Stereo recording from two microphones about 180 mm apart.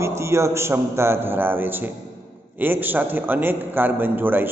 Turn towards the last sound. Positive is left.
turn(degrees=-10)  # may be behind; listen again after turning